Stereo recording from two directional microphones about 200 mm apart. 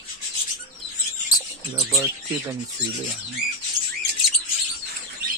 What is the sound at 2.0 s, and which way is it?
Speech, 15° right (ahead or behind).